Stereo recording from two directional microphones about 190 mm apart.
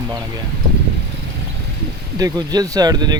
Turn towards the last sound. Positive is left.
turn(degrees=-20)  # may be behind; listen again after turning